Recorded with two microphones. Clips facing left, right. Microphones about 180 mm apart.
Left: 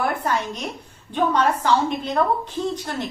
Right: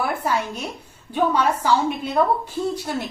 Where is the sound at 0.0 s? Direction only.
10° right (ahead or behind).